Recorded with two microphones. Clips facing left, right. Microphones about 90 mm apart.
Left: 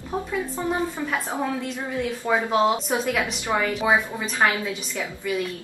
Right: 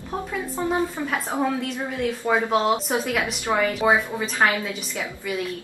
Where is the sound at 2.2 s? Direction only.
5° right (ahead or behind).